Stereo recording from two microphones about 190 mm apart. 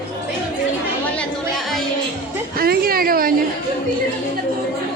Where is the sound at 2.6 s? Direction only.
50° right (ahead or behind).